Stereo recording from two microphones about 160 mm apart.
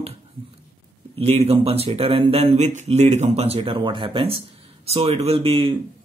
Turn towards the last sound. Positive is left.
turn(degrees=-35)  # may be behind; listen again after turning